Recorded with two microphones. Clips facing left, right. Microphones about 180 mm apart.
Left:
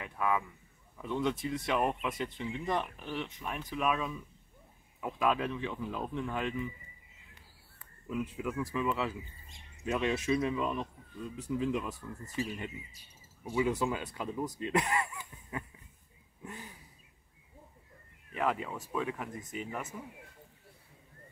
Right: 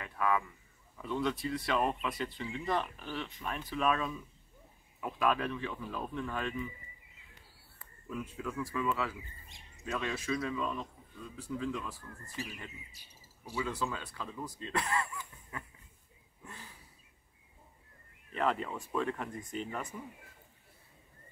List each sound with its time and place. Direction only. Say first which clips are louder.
0.0 s a sound: even; 15° left (ahead or behind)
1.0 s speech: left 1 dB; 20° left (ahead or behind)
8.1 s speech: left 4 dB; 15° left (ahead or behind)
13.0 s cricket: even; 70° right (ahead or behind)
13.4 s speech: left 6 dB; 20° left (ahead or behind)
18.3 s speech: even; 10° left (ahead or behind)